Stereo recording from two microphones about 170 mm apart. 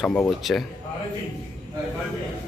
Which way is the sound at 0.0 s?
5° left (ahead or behind).